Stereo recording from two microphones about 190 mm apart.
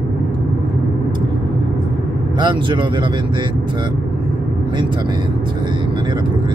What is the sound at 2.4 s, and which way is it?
Speech, 25° right (ahead or behind).